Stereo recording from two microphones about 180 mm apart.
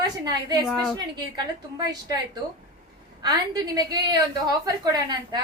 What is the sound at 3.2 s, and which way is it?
A woman's voice, 20° right (ahead or behind).